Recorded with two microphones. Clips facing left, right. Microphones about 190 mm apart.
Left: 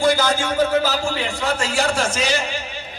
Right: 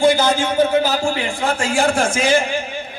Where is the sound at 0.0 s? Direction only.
50° right (ahead or behind).